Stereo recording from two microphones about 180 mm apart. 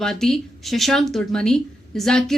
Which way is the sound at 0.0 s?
Centre (ahead or behind).